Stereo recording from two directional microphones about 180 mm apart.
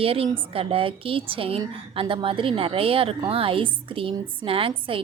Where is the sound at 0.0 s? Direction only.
30° right (ahead or behind).